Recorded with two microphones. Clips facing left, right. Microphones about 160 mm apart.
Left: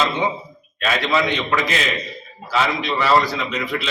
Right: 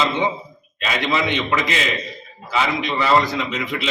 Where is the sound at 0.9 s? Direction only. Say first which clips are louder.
Left 2 dB; 20° right (ahead or behind).